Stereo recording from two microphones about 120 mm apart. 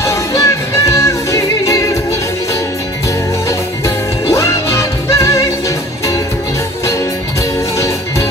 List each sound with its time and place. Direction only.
0.0 s music: 25° left (ahead or behind)
3.4 s music: 25° left (ahead or behind)
7.7 s music: 25° left (ahead or behind)